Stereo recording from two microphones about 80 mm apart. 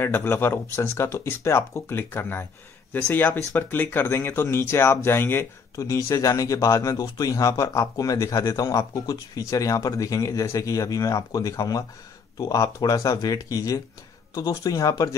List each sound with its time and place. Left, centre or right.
0.0 s speech: left
5.8 s speech: left